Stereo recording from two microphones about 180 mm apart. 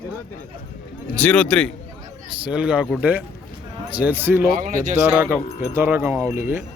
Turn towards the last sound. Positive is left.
turn(degrees=-15)  # may be behind; listen again after turning